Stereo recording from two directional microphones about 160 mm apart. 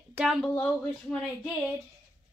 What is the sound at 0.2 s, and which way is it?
Speech, 5° right (ahead or behind).